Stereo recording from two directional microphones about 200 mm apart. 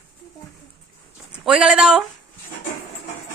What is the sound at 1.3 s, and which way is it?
Speech, 5° right (ahead or behind).